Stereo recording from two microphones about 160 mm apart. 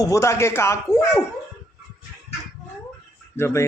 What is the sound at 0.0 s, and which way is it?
Speech, 20° left (ahead or behind).